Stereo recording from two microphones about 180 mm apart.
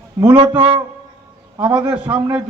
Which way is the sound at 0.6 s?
30° right (ahead or behind).